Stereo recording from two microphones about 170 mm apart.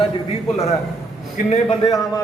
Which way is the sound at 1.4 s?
55° left (ahead or behind).